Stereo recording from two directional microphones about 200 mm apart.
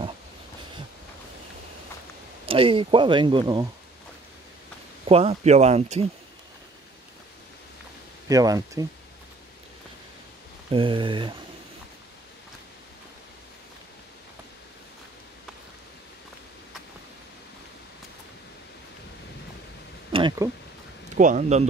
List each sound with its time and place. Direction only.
2.4 s speech: 25° right (ahead or behind)
5.0 s speech: 30° right (ahead or behind)
8.3 s speech: 20° right (ahead or behind)
10.7 s speech: 25° right (ahead or behind)
20.1 s a sound: 25° right (ahead or behind)
21.2 s speech: 40° right (ahead or behind)